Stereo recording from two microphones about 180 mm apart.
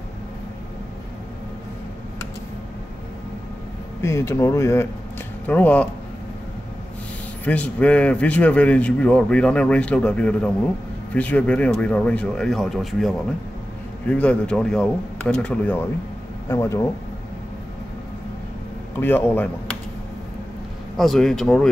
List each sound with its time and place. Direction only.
4.0 s speech: 15° left (ahead or behind)
7.4 s speech: 5° left (ahead or behind)
18.9 s speech: 10° left (ahead or behind)
20.9 s speech: centre (ahead or behind)